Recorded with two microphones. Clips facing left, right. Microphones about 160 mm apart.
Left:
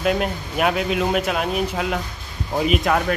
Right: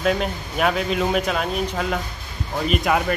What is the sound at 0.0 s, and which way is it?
Speech, 5° left (ahead or behind).